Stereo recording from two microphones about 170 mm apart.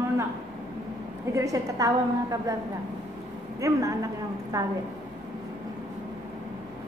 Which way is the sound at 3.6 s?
20° right (ahead or behind).